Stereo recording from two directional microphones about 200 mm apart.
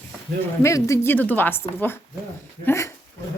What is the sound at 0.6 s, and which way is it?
Speech, 15° left (ahead or behind).